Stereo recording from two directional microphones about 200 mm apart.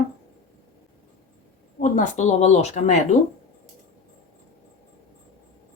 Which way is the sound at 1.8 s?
40° left (ahead or behind).